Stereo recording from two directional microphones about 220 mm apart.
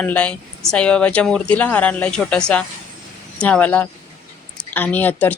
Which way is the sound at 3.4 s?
5° left (ahead or behind).